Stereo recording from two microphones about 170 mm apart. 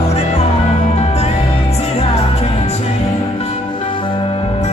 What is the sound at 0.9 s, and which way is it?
Music, 35° left (ahead or behind).